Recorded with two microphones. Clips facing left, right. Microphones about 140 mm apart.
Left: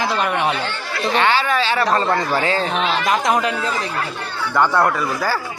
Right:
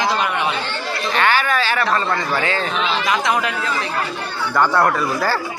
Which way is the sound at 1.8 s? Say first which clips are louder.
Left 2 dB; 35° left (ahead or behind).